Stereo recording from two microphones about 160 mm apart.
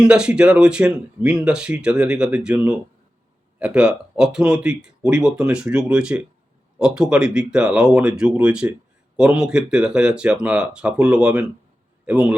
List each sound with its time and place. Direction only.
0.0 s a man's voice: 5° right (ahead or behind)